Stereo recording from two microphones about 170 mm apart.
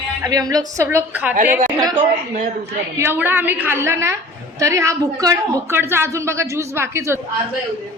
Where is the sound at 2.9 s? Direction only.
15° right (ahead or behind).